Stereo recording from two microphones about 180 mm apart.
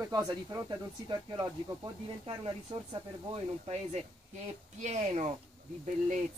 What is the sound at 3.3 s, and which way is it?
Speech, 35° right (ahead or behind).